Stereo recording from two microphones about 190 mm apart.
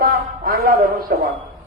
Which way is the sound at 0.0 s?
50° right (ahead or behind).